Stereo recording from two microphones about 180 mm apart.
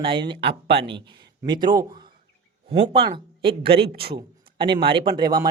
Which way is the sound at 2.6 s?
30° right (ahead or behind).